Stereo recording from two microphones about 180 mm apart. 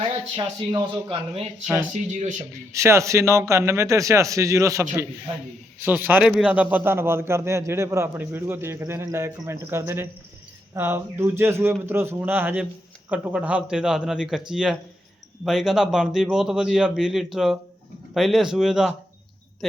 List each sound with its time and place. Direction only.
0.0 s speech: 25° right (ahead or behind)
1.6 s a man's voice: centre (ahead or behind)
1.9 s speech: 40° right (ahead or behind)
2.5 s a man's voice: 15° right (ahead or behind)